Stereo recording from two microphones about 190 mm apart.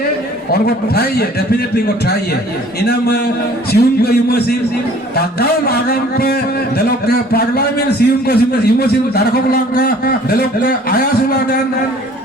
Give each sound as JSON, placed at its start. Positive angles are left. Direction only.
{"t": 0.5, "sound": "a man's voice", "side_deg": 55}